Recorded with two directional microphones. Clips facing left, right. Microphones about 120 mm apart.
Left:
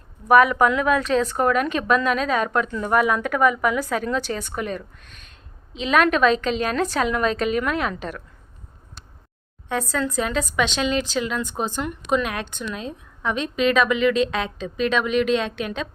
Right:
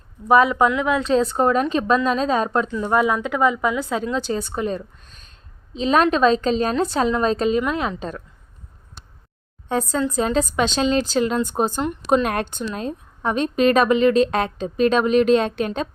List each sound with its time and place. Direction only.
0.3 s a woman's voice: 25° right (ahead or behind)
10.1 s a woman's voice: 35° right (ahead or behind)